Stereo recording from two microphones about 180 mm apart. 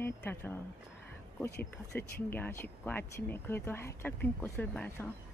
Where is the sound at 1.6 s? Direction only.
10° left (ahead or behind).